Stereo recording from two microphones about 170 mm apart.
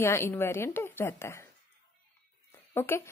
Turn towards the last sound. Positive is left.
turn(degrees=15)  # may be behind; listen again after turning